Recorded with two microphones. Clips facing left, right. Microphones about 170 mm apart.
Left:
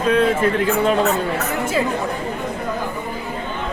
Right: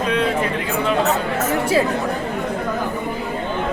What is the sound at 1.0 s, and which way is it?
Speech, 40° right (ahead or behind).